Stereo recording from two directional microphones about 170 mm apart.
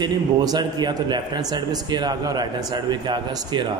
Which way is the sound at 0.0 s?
25° right (ahead or behind).